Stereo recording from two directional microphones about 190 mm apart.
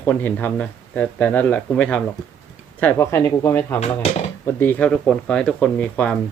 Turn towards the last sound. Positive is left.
turn(degrees=5)  # may be behind; listen again after turning